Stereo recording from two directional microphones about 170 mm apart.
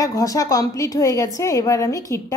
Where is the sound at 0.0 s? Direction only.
20° left (ahead or behind).